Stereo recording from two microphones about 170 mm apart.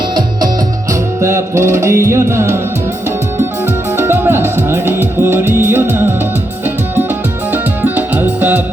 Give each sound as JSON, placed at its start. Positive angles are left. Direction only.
{"t": 1.2, "sound": "music", "side_deg": -15}
{"t": 3.9, "sound": "music", "side_deg": -15}
{"t": 7.5, "sound": "music", "side_deg": -10}